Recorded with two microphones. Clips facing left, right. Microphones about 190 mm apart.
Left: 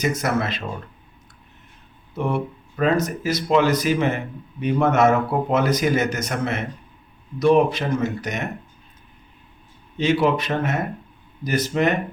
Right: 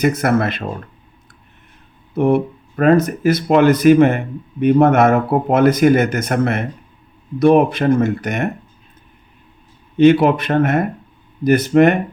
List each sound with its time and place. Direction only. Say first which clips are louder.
0.0 s speech: right 7 dB; 55° right (ahead or behind)
2.1 s speech: right 9 dB; 55° right (ahead or behind)
10.0 s speech: right 8 dB; 55° right (ahead or behind)